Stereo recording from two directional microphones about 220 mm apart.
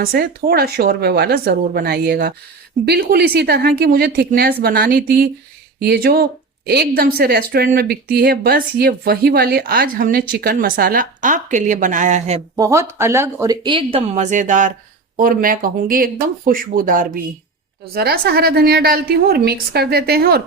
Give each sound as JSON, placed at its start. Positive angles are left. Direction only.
{"t": 0.0, "sound": "speech", "side_deg": -45}
{"t": 12.5, "sound": "speech", "side_deg": -15}